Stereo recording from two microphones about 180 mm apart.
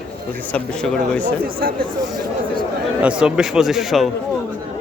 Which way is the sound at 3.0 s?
5° right (ahead or behind).